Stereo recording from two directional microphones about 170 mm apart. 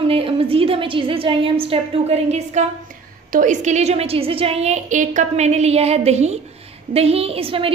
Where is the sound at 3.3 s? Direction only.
50° right (ahead or behind).